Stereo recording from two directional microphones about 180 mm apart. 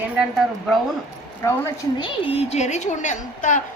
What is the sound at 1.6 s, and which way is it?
A woman's voice, 30° left (ahead or behind).